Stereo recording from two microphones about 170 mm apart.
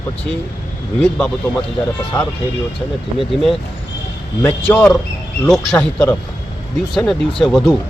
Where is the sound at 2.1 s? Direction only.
5° left (ahead or behind).